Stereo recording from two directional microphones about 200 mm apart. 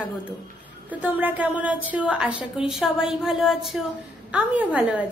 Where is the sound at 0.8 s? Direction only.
10° right (ahead or behind).